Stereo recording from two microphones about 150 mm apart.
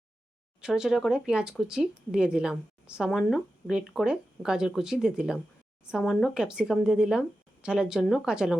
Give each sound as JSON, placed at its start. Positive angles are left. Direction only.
{"t": 0.6, "sound": "speech", "side_deg": -5}